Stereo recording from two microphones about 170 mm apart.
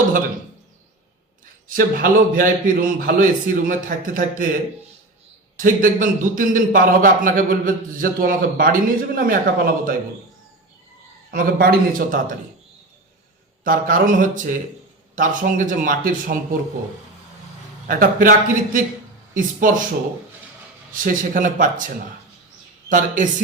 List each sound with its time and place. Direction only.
1.6 s a man's voice: 55° right (ahead or behind)
5.5 s a man's voice: 50° right (ahead or behind)
11.3 s a man's voice: 60° right (ahead or behind)
13.7 s a man's voice: 55° right (ahead or behind)
17.8 s a man's voice: 55° right (ahead or behind)
20.9 s a man's voice: 50° right (ahead or behind)